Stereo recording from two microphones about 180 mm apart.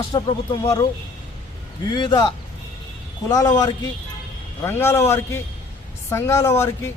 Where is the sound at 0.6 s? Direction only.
20° left (ahead or behind).